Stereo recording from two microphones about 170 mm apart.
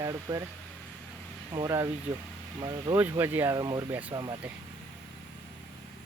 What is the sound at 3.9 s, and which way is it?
Speech, 10° right (ahead or behind).